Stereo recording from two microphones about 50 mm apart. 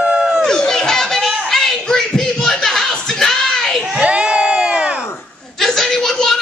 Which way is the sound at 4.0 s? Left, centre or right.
Right.